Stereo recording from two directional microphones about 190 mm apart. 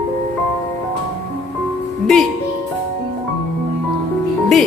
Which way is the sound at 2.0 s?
Centre (ahead or behind).